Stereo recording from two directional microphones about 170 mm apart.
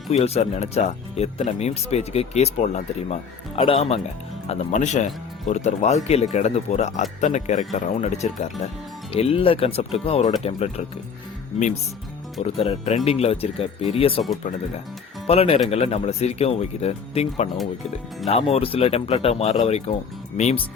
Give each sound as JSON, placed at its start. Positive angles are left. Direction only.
{"t": 0.1, "sound": "speech", "side_deg": 40}
{"t": 12.4, "sound": "speech", "side_deg": 35}
{"t": 15.3, "sound": "speech", "side_deg": 35}